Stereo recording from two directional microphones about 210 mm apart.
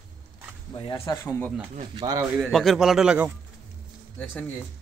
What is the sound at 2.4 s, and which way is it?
Speech, centre (ahead or behind).